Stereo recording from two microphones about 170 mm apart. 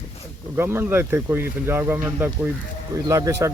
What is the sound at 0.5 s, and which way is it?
Speech, 15° right (ahead or behind).